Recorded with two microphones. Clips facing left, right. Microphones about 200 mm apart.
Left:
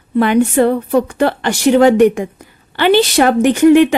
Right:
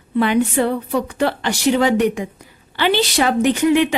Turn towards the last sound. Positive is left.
turn(degrees=50)  # may be behind; listen again after turning